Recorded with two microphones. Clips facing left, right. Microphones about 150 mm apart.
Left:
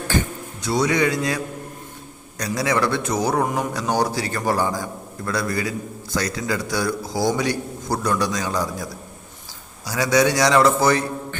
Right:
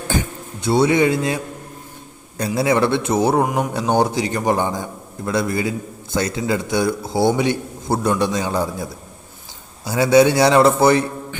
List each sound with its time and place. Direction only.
0.6 s a man's voice: 30° right (ahead or behind)
2.6 s a man's voice: 25° right (ahead or behind)
3.4 s speech: 10° right (ahead or behind)
3.7 s a man's voice: 25° right (ahead or behind)